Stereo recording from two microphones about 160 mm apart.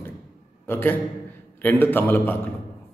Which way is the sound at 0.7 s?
10° left (ahead or behind).